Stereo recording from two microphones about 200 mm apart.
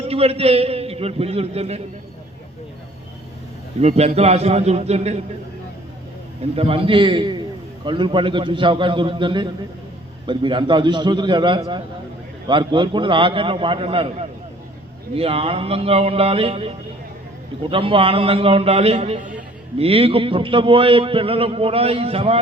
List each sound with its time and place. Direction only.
0.1 s a man's voice: 30° right (ahead or behind)
3.8 s a man's voice: 30° right (ahead or behind)
6.6 s a man's voice: 30° right (ahead or behind)